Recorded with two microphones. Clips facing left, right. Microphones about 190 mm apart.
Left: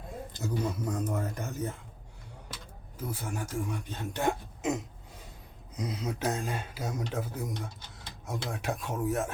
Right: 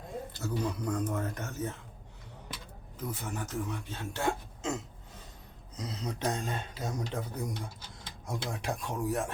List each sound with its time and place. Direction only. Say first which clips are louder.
0.3 s speech: left 2 dB; 15° left (ahead or behind)
0.8 s speech: even; 5° left (ahead or behind)
3.0 s speech: left 1 dB; 10° left (ahead or behind)